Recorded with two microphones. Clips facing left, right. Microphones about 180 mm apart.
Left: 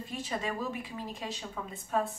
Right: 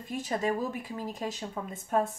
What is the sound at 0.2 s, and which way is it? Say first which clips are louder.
A woman's voice: right 5 dB; 45° right (ahead or behind).